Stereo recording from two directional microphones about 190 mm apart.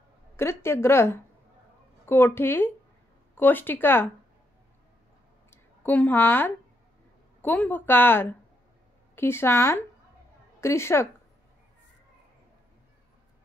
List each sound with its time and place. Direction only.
0.4 s a woman's voice: 15° left (ahead or behind)
5.5 s a woman's voice: 10° left (ahead or behind)